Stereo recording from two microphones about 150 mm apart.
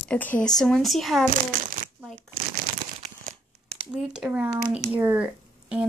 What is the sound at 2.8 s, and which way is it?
Crumpling, 55° right (ahead or behind).